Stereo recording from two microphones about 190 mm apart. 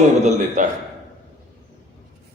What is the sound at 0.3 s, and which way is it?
Speech, 40° right (ahead or behind).